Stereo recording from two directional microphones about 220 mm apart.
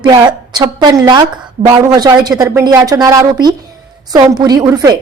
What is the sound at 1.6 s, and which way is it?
Speech, 30° right (ahead or behind).